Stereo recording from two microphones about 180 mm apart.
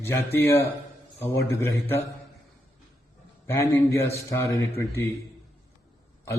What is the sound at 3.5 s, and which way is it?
A man's voice, 15° left (ahead or behind).